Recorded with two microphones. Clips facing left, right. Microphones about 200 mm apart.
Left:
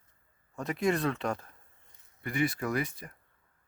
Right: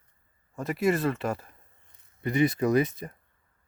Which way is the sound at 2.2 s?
20° right (ahead or behind).